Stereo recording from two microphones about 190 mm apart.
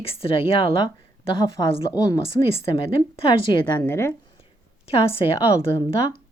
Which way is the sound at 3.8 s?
15° left (ahead or behind).